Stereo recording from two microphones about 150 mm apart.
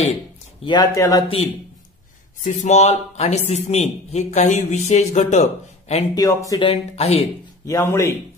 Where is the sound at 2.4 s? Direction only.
50° left (ahead or behind).